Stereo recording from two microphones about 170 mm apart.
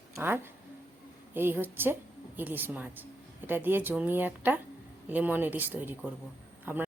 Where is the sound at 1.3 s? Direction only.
10° right (ahead or behind).